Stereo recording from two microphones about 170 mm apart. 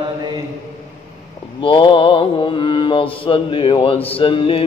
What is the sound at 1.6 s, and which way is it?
Mantra, 30° left (ahead or behind).